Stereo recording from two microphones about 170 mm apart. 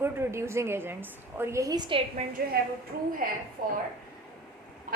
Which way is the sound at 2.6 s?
65° right (ahead or behind).